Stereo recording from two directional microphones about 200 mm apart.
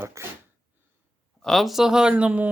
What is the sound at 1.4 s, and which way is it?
Speech, centre (ahead or behind).